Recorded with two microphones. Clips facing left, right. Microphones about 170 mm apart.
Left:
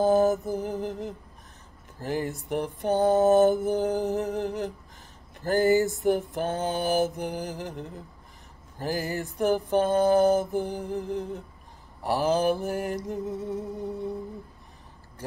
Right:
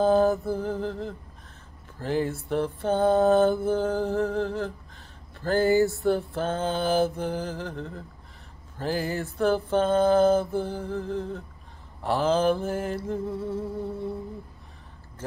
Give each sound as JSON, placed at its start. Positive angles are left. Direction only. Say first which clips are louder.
{"t": 0.0, "sound": "mantra", "louder": "even", "side_deg": 15}